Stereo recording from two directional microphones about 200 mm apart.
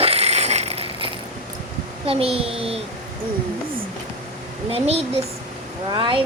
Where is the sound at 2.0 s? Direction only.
30° right (ahead or behind).